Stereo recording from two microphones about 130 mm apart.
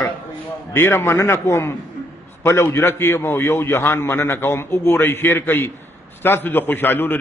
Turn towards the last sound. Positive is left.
turn(degrees=15)  # may be behind; listen again after turning